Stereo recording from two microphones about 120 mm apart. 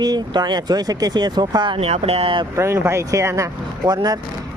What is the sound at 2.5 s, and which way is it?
Speech, 20° right (ahead or behind).